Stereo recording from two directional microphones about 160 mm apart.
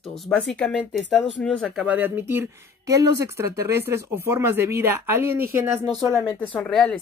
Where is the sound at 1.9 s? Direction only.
10° right (ahead or behind).